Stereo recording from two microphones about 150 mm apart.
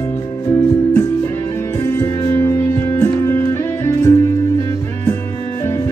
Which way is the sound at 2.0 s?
15° left (ahead or behind).